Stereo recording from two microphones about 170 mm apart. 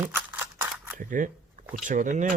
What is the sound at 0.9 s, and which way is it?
Speech, 50° right (ahead or behind).